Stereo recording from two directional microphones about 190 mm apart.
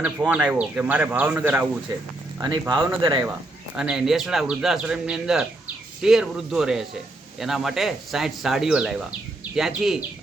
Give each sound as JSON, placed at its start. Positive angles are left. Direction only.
{"t": 0.2, "sound": "speech", "side_deg": -5}
{"t": 1.9, "sound": "speech", "side_deg": -25}
{"t": 3.8, "sound": "speech", "side_deg": -5}